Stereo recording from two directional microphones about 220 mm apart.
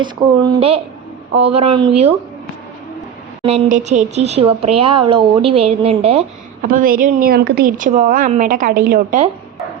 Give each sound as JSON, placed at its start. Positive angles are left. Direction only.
{"t": 0.0, "sound": "a woman's voice", "side_deg": -20}
{"t": 3.4, "sound": "a woman's voice", "side_deg": -30}
{"t": 6.6, "sound": "a woman's voice", "side_deg": -40}